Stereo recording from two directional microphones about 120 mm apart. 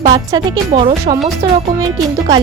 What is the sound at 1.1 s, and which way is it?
Speech, 75° right (ahead or behind).